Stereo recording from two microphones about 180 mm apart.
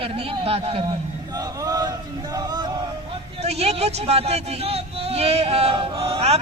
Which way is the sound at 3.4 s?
35° right (ahead or behind).